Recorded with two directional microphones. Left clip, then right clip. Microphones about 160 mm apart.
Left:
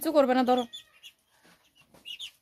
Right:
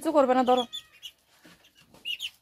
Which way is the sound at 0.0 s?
10° left (ahead or behind).